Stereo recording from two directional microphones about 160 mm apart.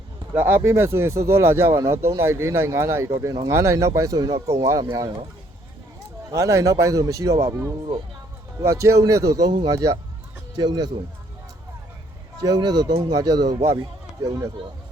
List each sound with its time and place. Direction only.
0.3 s a man's voice: 10° right (ahead or behind)
6.3 s a man's voice: 20° right (ahead or behind)
12.4 s a man's voice: 25° right (ahead or behind)